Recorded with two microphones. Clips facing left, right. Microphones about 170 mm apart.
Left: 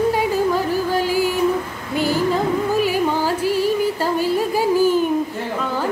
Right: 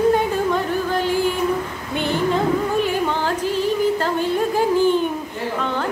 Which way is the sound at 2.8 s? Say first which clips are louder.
Left 2 dB; 5° left (ahead or behind).